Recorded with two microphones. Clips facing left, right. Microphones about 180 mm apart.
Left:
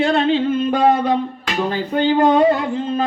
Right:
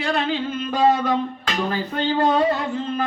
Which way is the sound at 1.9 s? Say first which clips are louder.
Left 6 dB; 20° left (ahead or behind).